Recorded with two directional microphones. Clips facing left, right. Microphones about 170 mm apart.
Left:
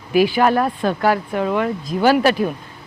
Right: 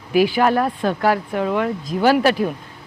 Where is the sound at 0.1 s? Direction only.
15° left (ahead or behind).